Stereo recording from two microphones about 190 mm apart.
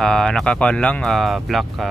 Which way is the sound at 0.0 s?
5° left (ahead or behind).